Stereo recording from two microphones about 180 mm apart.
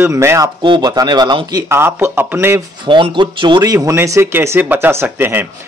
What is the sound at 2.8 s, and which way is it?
A man's voice, 25° right (ahead or behind).